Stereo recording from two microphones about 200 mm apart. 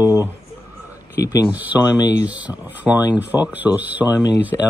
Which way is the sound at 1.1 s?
15° left (ahead or behind).